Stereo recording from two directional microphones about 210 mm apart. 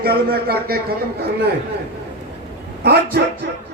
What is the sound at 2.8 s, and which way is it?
Speech, 50° right (ahead or behind).